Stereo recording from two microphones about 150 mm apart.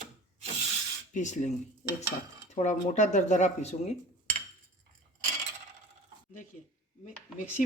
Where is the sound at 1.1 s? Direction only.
55° left (ahead or behind).